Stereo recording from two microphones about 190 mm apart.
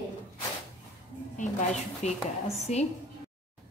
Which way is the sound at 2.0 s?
35° left (ahead or behind).